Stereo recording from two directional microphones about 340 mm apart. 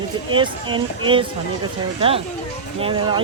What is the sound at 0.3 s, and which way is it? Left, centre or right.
Speech, centre.